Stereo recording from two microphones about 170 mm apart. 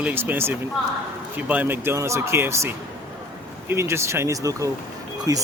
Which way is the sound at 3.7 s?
15° right (ahead or behind).